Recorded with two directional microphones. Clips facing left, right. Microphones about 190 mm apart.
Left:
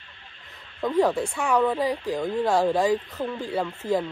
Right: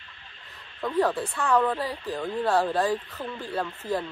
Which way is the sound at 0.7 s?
15° left (ahead or behind).